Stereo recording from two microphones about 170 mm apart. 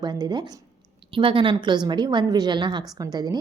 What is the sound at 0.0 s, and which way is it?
A woman's voice, 25° right (ahead or behind).